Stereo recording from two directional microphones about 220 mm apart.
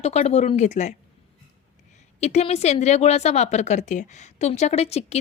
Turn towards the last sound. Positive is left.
turn(degrees=30)  # may be behind; listen again after turning